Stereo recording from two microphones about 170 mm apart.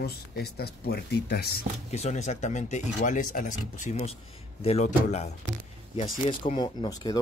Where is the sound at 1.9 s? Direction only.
40° left (ahead or behind).